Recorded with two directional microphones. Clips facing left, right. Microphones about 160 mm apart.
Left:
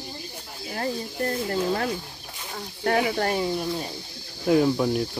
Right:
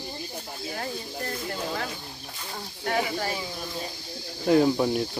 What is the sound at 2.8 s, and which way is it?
Speech, 55° left (ahead or behind).